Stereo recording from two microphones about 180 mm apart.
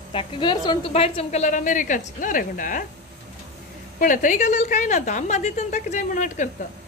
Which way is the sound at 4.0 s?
45° left (ahead or behind).